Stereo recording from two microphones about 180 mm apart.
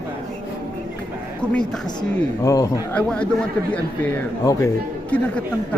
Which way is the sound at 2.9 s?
5° left (ahead or behind).